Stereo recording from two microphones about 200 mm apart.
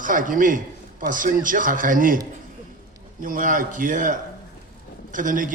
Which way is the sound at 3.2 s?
45° right (ahead or behind).